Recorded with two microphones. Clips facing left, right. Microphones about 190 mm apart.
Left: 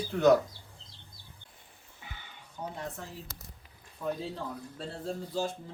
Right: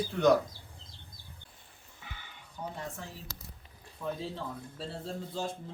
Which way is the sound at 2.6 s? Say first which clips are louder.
Left 1 dB; 20° left (ahead or behind).